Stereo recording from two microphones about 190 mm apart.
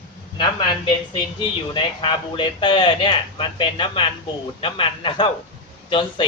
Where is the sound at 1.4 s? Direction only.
25° left (ahead or behind).